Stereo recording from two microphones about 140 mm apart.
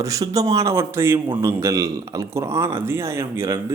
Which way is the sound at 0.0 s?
25° right (ahead or behind).